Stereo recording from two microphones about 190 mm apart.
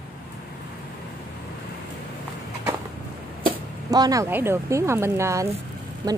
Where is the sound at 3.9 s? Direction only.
20° right (ahead or behind).